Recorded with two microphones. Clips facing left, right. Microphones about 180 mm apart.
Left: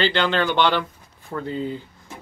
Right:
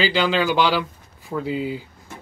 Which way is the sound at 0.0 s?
5° right (ahead or behind).